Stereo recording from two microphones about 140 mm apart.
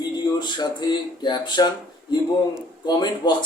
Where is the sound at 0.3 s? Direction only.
30° left (ahead or behind).